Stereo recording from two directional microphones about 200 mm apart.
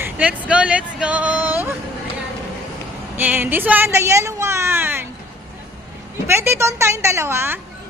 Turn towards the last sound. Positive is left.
turn(degrees=-10)  # may be behind; listen again after turning